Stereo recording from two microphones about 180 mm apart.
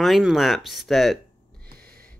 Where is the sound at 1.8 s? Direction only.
55° right (ahead or behind).